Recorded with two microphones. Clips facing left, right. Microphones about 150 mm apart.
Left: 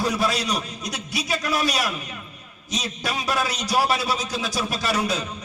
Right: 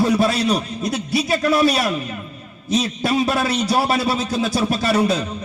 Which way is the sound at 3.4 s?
55° right (ahead or behind).